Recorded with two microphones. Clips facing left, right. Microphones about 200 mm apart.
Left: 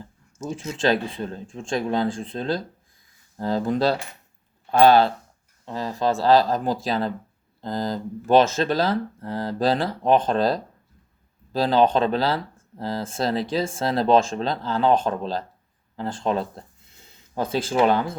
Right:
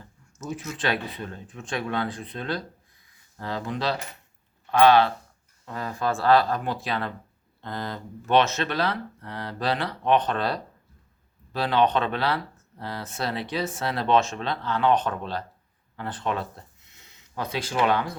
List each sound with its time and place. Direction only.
0.3 s speech: 30° left (ahead or behind)
5.6 s speech: 30° left (ahead or behind)
16.9 s a sound: 30° left (ahead or behind)